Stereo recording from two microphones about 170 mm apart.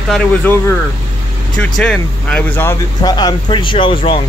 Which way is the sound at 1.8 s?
5° left (ahead or behind).